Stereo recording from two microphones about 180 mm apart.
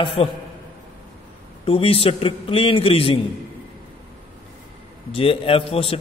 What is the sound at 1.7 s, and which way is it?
A man's voice, 30° left (ahead or behind).